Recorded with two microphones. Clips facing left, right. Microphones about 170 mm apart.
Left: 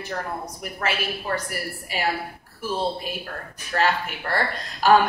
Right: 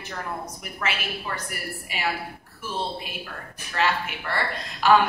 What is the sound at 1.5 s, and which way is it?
Speech, 40° left (ahead or behind).